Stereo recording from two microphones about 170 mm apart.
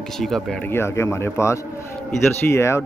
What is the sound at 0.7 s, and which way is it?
Speech, 15° left (ahead or behind).